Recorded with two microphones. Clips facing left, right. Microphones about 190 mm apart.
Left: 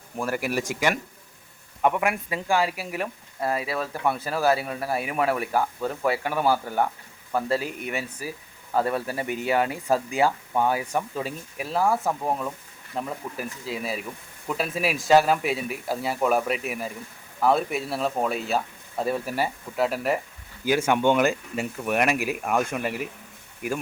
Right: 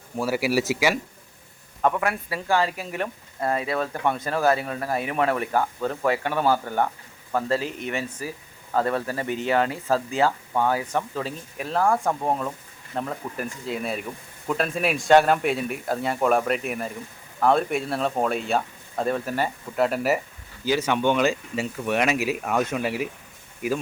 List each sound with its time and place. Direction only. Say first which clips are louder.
0.2 s speech: right 4 dB; 5° right (ahead or behind)
1.8 s speech: even; 15° left (ahead or behind); by 20.2 s 5° right (ahead or behind)
20.7 s speech: left 1 dB; 10° left (ahead or behind)
21.2 s speech: right 1 dB; 55° left (ahead or behind)
21.8 s speech: right 1 dB; 5° left (ahead or behind)